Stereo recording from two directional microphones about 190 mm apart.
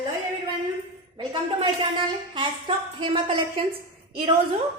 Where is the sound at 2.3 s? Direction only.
25° right (ahead or behind).